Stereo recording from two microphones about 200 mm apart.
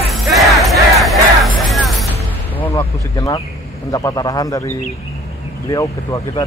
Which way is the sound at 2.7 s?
20° left (ahead or behind).